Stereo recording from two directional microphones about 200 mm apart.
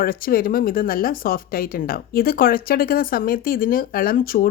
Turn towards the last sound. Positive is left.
turn(degrees=45)  # may be behind; listen again after turning